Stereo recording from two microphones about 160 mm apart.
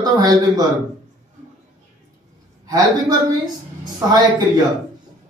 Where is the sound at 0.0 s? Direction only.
25° right (ahead or behind).